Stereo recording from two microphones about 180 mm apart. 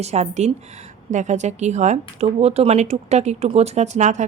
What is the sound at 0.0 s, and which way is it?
Speech, 40° right (ahead or behind).